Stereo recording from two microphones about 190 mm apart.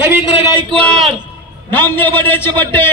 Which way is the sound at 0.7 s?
5° left (ahead or behind).